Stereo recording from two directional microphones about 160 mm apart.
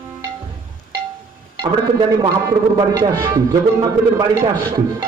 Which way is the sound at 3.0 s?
20° right (ahead or behind).